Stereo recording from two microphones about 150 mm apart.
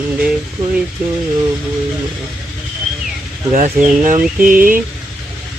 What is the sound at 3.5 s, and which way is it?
Speech, 55° right (ahead or behind).